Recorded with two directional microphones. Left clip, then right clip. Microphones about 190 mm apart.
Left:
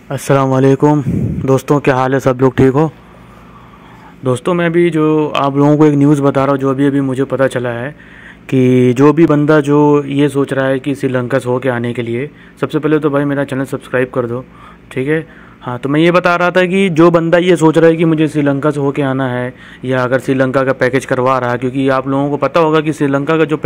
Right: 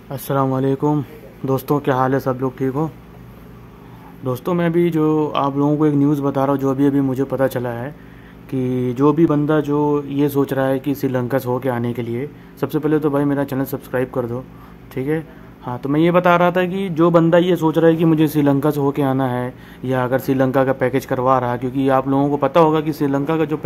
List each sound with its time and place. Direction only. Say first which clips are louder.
0.1 s speech: left 7 dB; 30° left (ahead or behind)
2.0 s a man's voice: left 6 dB; 30° left (ahead or behind)
4.2 s speech: left 7 dB; 15° left (ahead or behind)
5.6 s speech: left 9 dB; 25° left (ahead or behind)
8.5 s speech: left 11 dB; 25° left (ahead or behind)
10.4 s speech: left 5 dB; 5° left (ahead or behind)
18.1 s speech: left 3 dB; centre (ahead or behind)